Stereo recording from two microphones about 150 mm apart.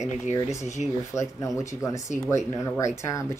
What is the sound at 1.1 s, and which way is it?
Speech, 20° left (ahead or behind).